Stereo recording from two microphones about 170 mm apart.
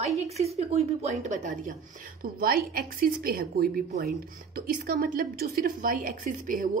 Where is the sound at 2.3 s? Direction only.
60° right (ahead or behind).